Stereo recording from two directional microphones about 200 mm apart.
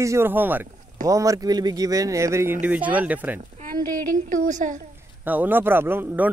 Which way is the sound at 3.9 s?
40° right (ahead or behind).